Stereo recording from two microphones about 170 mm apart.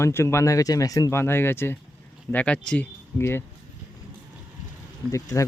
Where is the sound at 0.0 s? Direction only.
15° left (ahead or behind).